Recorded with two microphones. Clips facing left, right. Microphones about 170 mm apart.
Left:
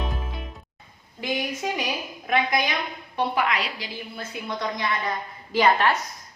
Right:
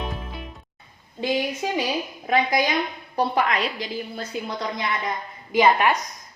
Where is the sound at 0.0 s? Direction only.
Centre (ahead or behind).